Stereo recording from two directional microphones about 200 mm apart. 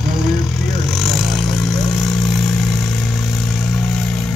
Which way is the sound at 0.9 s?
Centre (ahead or behind).